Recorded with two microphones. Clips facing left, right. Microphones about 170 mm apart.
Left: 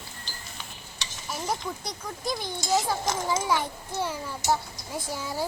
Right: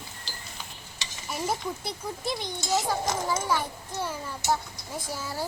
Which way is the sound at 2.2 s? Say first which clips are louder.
Left 2 dB; 20° right (ahead or behind).